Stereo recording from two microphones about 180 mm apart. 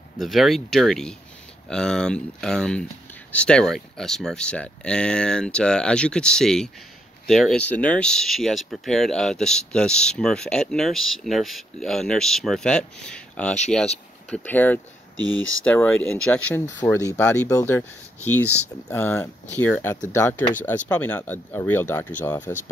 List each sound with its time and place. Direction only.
0.2 s speech: centre (ahead or behind)
15.1 s speech: 90° left
15.6 s speech: 10° left (ahead or behind)